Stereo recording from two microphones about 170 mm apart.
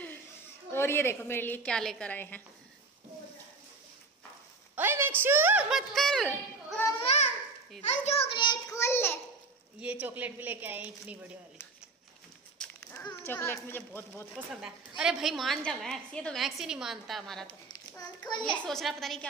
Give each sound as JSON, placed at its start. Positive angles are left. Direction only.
{"t": 0.7, "sound": "a woman's voice", "side_deg": 15}
{"t": 4.7, "sound": "a woman's voice", "side_deg": -15}
{"t": 7.0, "sound": "babbling", "side_deg": 40}
{"t": 7.8, "sound": "a child's voice", "side_deg": 40}
{"t": 8.7, "sound": "a sound", "side_deg": 15}
{"t": 9.8, "sound": "speech", "side_deg": -10}
{"t": 12.5, "sound": "a sound", "side_deg": 10}
{"t": 13.0, "sound": "a woman's voice", "side_deg": 15}
{"t": 14.3, "sound": "a woman's voice", "side_deg": -5}
{"t": 17.5, "sound": "a child's voice", "side_deg": 25}
{"t": 18.4, "sound": "a woman's voice", "side_deg": 5}